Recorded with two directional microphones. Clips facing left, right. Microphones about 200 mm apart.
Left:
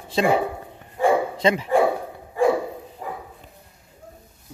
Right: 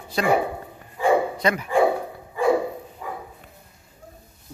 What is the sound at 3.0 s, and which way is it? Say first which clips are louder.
Dog: left 1 dB; 40° left (ahead or behind).